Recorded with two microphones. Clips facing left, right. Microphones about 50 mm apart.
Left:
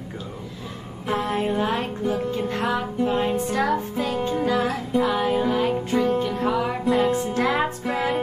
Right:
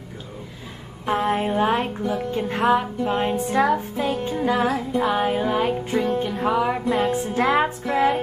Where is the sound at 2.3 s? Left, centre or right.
Centre.